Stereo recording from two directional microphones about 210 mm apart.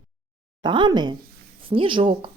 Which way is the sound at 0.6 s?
20° right (ahead or behind).